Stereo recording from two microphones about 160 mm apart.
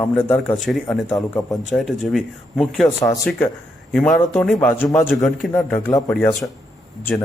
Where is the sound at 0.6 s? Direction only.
Centre (ahead or behind).